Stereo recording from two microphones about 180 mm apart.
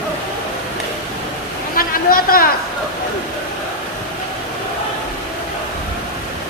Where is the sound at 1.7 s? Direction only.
55° left (ahead or behind).